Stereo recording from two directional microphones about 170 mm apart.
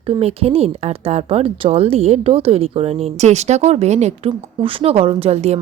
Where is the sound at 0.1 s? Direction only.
35° right (ahead or behind).